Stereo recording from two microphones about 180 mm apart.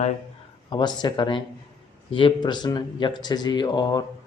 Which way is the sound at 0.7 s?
25° left (ahead or behind).